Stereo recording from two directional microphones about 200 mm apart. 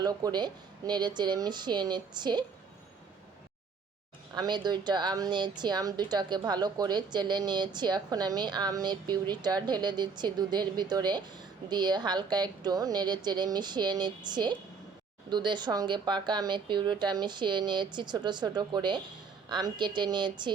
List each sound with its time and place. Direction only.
0.0 s a woman's voice: 20° right (ahead or behind)
4.4 s a woman's voice: 20° right (ahead or behind)